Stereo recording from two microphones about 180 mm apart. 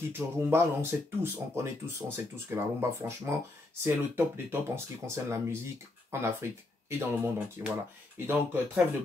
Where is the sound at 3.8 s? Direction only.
10° right (ahead or behind).